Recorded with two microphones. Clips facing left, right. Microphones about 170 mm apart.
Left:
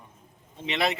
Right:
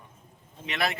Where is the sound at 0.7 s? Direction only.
20° left (ahead or behind).